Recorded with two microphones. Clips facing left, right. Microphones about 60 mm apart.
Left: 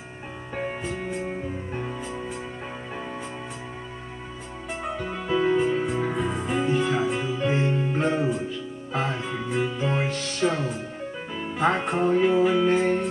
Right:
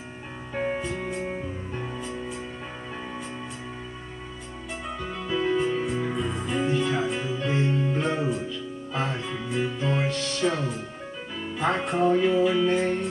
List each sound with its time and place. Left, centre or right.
0.6 s music: centre
1.8 s music: centre
4.9 s music: left
5.9 s music: left
11.5 s music: left